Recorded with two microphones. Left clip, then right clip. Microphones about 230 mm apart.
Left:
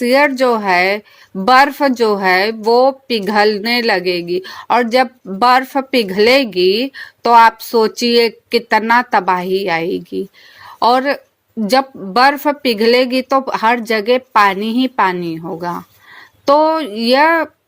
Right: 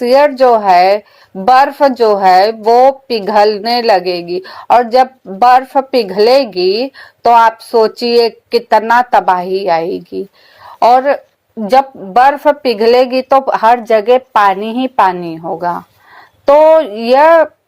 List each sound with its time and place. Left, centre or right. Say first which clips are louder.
0.0 s a woman's voice: right 4 dB; left
9.9 s speech: right 1 dB; centre
10.6 s a sound: right 5 dB; left
12.1 s a woman's voice: right 4 dB; left